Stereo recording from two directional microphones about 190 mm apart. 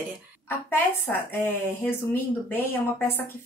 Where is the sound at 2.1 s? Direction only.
10° left (ahead or behind).